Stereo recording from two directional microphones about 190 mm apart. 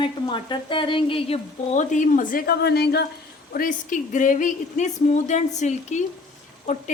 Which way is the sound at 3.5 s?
45° left (ahead or behind).